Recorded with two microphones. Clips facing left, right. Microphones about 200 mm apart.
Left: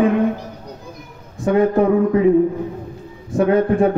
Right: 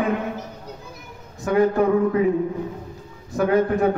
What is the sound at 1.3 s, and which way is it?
Speech, 30° left (ahead or behind).